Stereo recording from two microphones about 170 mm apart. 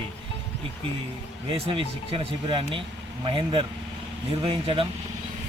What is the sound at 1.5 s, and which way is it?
Speech, 30° right (ahead or behind).